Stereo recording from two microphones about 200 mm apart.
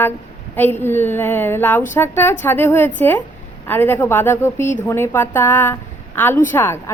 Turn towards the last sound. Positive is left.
turn(degrees=10)  # may be behind; listen again after turning